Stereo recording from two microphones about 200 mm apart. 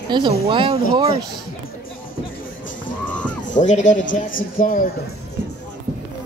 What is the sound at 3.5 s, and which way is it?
Speech, 35° left (ahead or behind).